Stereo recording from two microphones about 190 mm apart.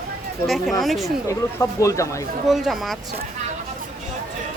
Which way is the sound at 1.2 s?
15° left (ahead or behind).